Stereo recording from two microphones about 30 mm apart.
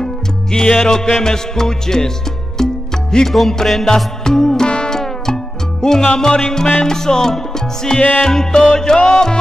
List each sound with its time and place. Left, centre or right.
0.0 s music: left
3.3 s music: centre
3.9 s music: centre